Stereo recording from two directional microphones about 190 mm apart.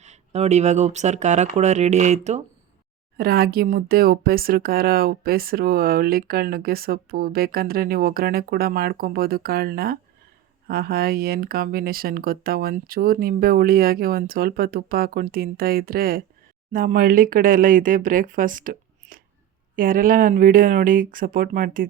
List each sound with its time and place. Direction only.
0.0 s speech: 35° right (ahead or behind)
3.2 s speech: 55° right (ahead or behind)